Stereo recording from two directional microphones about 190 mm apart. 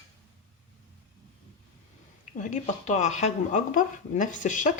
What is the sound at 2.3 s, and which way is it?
Speech, 40° left (ahead or behind).